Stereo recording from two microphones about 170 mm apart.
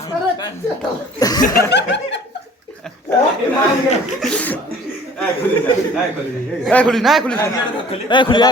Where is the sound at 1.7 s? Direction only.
90° left.